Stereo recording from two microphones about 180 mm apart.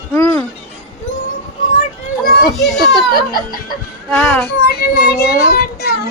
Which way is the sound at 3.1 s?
55° left (ahead or behind).